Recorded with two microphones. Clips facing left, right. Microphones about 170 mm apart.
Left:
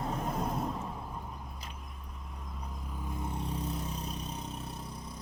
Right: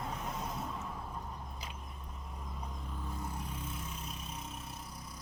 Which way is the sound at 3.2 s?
30° left (ahead or behind).